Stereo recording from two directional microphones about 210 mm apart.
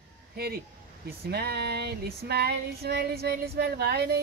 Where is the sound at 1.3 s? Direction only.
50° right (ahead or behind).